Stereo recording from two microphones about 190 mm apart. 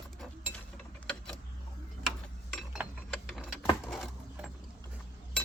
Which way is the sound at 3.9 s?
Centre (ahead or behind).